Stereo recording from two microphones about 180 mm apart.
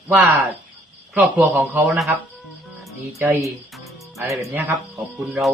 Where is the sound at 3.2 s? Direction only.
15° right (ahead or behind).